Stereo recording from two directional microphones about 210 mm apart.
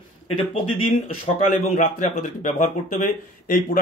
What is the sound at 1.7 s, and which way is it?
Speech, 40° left (ahead or behind).